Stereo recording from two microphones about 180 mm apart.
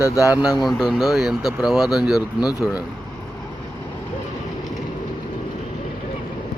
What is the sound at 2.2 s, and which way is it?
Speech, 20° left (ahead or behind).